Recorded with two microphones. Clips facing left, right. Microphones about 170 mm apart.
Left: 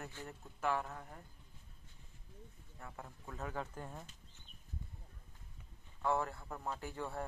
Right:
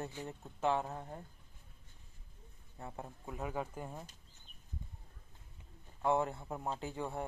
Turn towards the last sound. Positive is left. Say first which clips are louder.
# right 3 dB
turn(degrees=-15)  # may be behind; listen again after turning